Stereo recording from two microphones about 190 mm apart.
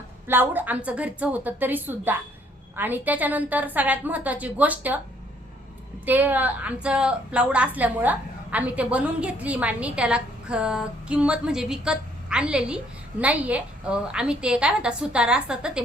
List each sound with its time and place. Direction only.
0.3 s a woman's voice: 10° right (ahead or behind)
6.1 s a woman's voice: 10° right (ahead or behind)